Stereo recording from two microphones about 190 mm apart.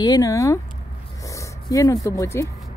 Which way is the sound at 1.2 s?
15° left (ahead or behind).